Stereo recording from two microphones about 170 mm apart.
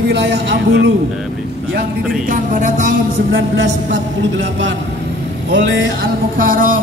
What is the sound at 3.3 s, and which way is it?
A man's voice, 90° right.